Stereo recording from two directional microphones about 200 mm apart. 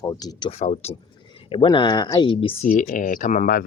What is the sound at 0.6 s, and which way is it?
Speech, 30° left (ahead or behind).